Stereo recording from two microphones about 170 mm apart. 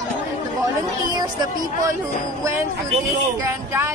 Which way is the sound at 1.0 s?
25° right (ahead or behind).